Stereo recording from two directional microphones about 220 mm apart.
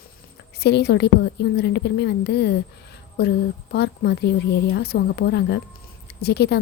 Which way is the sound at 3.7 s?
50° left (ahead or behind).